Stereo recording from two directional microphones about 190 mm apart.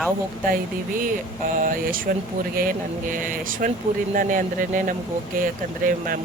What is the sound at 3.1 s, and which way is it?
Speech, 45° right (ahead or behind).